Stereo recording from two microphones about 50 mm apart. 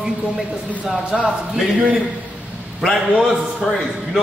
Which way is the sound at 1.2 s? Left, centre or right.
Right.